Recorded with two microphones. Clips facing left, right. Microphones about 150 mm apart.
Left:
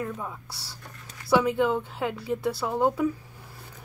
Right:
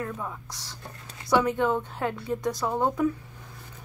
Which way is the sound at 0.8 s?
30° right (ahead or behind).